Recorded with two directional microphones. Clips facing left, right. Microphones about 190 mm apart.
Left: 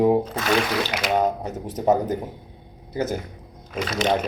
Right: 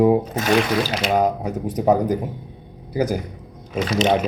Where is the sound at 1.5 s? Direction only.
15° right (ahead or behind).